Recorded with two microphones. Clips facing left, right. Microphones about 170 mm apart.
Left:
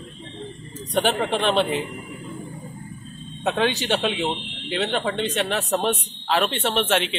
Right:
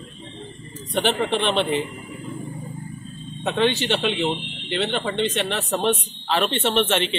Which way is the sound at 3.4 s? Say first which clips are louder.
Right 1 dB; 10° left (ahead or behind).